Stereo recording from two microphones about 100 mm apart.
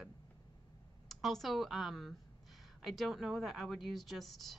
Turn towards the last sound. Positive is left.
turn(degrees=0)  # may be behind; listen again after turning